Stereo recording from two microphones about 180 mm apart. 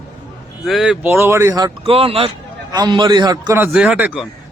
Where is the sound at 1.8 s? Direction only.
35° right (ahead or behind).